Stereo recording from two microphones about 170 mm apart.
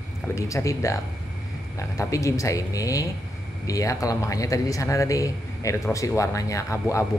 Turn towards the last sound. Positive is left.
turn(degrees=20)  # may be behind; listen again after turning